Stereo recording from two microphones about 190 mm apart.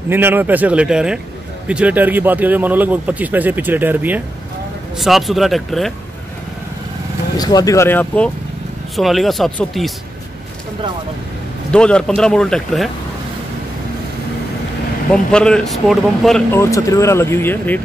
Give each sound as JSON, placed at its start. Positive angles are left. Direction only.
{"t": 0.1, "sound": "speech", "side_deg": -10}
{"t": 7.3, "sound": "speech", "side_deg": 20}
{"t": 11.7, "sound": "speech", "side_deg": 5}
{"t": 15.3, "sound": "speech", "side_deg": 5}
{"t": 16.5, "sound": "speech", "side_deg": 15}